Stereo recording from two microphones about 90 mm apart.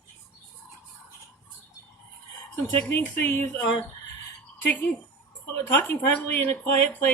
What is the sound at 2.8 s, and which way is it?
Speech, 25° left (ahead or behind).